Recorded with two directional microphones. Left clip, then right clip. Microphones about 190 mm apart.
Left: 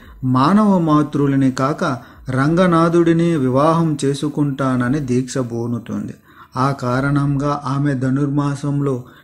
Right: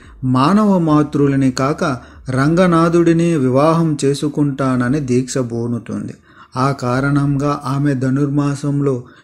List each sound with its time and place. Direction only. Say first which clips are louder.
0.4 s speech: right 1 dB; 45° right (ahead or behind)
4.1 s speech: right 3 dB; 20° right (ahead or behind)
4.6 s speech: right 2 dB; 40° right (ahead or behind)